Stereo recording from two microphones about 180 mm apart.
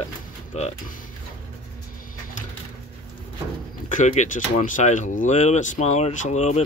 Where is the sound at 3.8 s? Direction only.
45° left (ahead or behind).